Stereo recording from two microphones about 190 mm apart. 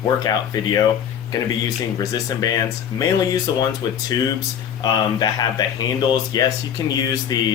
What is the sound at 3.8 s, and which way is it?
Speech, 20° left (ahead or behind).